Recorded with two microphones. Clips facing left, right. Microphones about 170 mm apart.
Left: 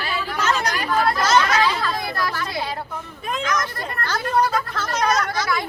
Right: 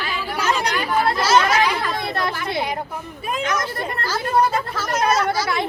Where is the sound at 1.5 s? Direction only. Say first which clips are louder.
Right 1 dB; 15° right (ahead or behind).